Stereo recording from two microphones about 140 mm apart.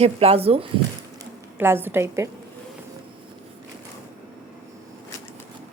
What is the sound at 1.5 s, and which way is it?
Speech, 15° right (ahead or behind).